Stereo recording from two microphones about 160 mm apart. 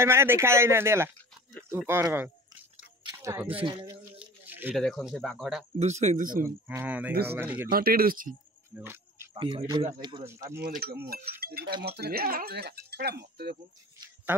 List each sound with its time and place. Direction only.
0.0 s speech: 15° right (ahead or behind)
3.2 s a sound: 20° right (ahead or behind)
3.4 s speech: 35° right (ahead or behind)
4.2 s a sound: 10° right (ahead or behind)
4.7 s speech: centre (ahead or behind)
5.8 s speech: 45° right (ahead or behind)
6.4 s speech: 15° right (ahead or behind)
7.7 s cutlery: 65° right (ahead or behind)
8.7 s cricket: 15° right (ahead or behind)
9.3 s speech: 35° right (ahead or behind)
10.2 s speech: 15° right (ahead or behind)
10.6 s cutlery: 70° right (ahead or behind)
12.0 s speech: 70° right (ahead or behind)